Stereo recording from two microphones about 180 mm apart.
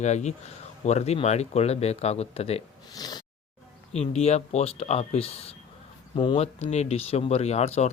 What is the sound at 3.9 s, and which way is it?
Speech, 35° left (ahead or behind).